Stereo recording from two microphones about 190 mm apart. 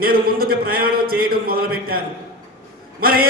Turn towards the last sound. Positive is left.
turn(degrees=-50)  # may be behind; listen again after turning